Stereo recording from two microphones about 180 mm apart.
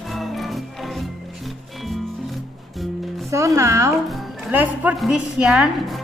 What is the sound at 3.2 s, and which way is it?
Speech, 15° right (ahead or behind).